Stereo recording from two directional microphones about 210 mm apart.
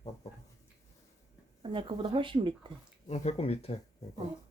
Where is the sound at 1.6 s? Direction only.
25° right (ahead or behind).